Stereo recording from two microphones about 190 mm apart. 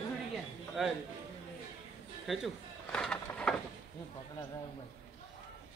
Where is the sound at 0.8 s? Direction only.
Centre (ahead or behind).